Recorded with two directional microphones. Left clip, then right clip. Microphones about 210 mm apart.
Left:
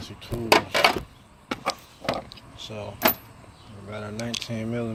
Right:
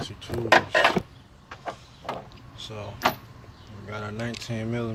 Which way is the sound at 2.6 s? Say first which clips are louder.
Left 1 dB; 5° right (ahead or behind).